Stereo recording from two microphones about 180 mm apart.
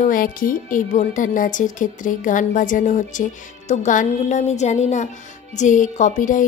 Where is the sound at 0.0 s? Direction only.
50° left (ahead or behind).